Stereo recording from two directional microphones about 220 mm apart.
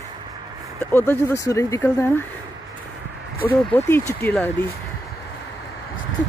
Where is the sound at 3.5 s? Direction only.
10° left (ahead or behind).